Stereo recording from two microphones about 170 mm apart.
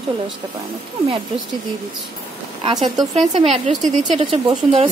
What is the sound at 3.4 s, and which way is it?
A woman's voice, 35° right (ahead or behind).